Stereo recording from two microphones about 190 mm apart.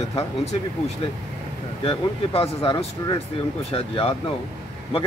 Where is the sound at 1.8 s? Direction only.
30° left (ahead or behind).